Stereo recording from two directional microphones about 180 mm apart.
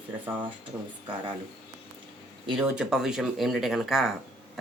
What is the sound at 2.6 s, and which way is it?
Speech, 5° right (ahead or behind).